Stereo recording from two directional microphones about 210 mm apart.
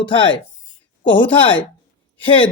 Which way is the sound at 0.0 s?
25° left (ahead or behind).